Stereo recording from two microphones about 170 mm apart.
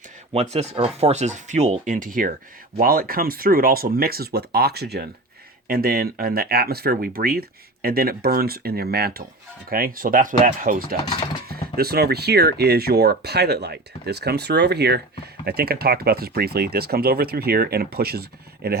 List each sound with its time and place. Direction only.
0.3 s speech: 40° right (ahead or behind); by 5.0 s 70° right (ahead or behind)
5.6 s speech: 60° right (ahead or behind)